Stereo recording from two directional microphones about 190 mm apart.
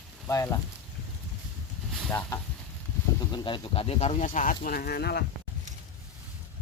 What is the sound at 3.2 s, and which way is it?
Speech, 20° left (ahead or behind).